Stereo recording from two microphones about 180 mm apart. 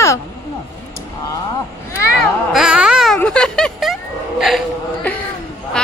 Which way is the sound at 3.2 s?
5° left (ahead or behind).